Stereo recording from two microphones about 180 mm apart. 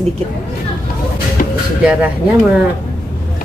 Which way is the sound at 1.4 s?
50° left (ahead or behind).